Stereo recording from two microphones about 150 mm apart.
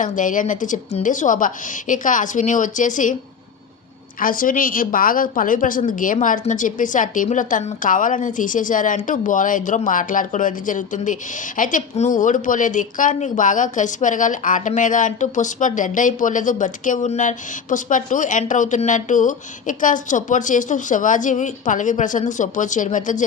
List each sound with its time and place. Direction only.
0.0 s speech: 60° left (ahead or behind)
4.2 s speech: 65° left (ahead or behind)